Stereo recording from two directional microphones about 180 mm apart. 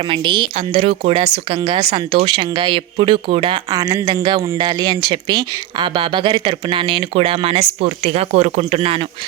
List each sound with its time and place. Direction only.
0.1 s speech: 30° right (ahead or behind)